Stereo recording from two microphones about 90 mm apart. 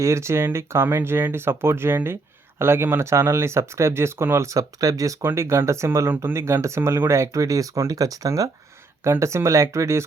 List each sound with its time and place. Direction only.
0.0 s speech: 30° right (ahead or behind)
5.2 s speech: 30° right (ahead or behind)